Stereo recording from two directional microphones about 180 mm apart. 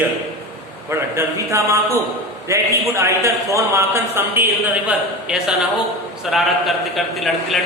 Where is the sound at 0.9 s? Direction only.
15° right (ahead or behind).